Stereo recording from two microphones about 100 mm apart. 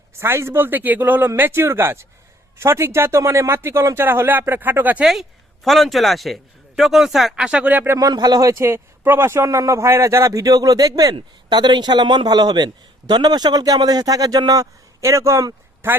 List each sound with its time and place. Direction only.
0.2 s speech: 25° right (ahead or behind)
5.6 s speech: centre (ahead or behind); by 7.9 s 15° right (ahead or behind)
7.9 s speech: 40° right (ahead or behind)
11.1 s speech: 50° right (ahead or behind)
15.8 s speech: 25° right (ahead or behind)